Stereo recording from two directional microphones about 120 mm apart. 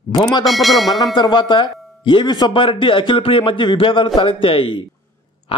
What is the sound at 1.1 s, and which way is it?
Speech, 40° left (ahead or behind).